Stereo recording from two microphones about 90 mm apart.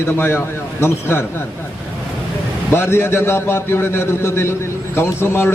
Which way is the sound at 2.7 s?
25° left (ahead or behind).